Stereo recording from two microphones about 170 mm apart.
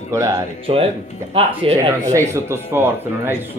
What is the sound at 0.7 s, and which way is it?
Speech, 35° right (ahead or behind).